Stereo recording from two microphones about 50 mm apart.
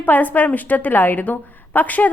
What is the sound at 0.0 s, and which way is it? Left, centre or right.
A woman's voice, left.